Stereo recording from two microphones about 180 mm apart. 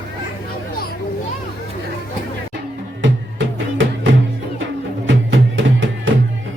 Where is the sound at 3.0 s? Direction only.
90° right.